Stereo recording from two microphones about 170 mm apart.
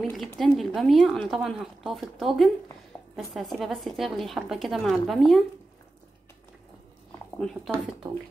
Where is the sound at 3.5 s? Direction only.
Centre (ahead or behind).